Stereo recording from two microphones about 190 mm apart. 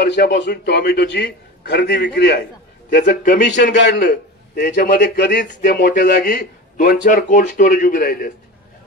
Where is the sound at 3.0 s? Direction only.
45° left (ahead or behind).